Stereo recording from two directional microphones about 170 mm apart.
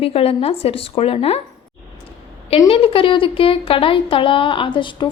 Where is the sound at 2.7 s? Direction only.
35° left (ahead or behind).